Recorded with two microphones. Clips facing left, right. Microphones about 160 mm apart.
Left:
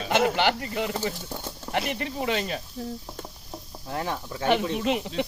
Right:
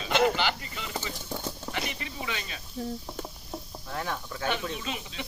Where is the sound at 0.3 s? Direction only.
60° left (ahead or behind).